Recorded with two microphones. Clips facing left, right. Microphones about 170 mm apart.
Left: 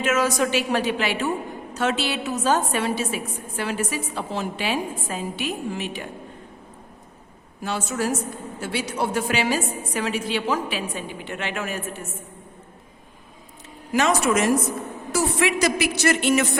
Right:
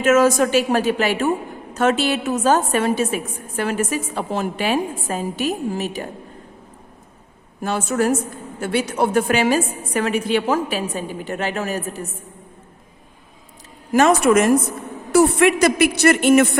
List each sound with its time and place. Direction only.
0.0 s a woman's voice: 45° right (ahead or behind)
7.6 s a woman's voice: 50° right (ahead or behind)
13.9 s a woman's voice: 50° right (ahead or behind)